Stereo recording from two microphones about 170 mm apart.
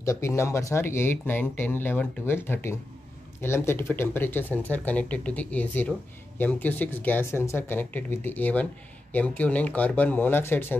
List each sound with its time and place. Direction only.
0.0 s speech: 15° left (ahead or behind)